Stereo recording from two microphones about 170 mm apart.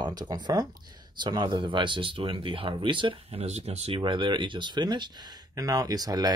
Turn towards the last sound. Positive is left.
turn(degrees=-20)  # may be behind; listen again after turning